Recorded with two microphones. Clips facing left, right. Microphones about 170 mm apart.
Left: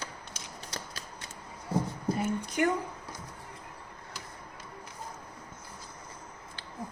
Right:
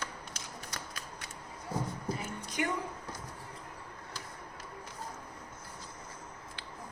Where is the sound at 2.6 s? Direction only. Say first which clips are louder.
Left 6 dB; 50° left (ahead or behind).